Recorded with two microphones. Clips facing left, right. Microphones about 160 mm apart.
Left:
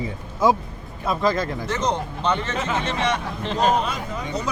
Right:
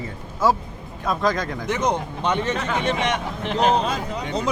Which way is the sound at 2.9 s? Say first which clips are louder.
Even; 15° right (ahead or behind).